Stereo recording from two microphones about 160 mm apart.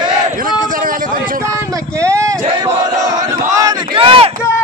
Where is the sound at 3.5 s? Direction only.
30° right (ahead or behind).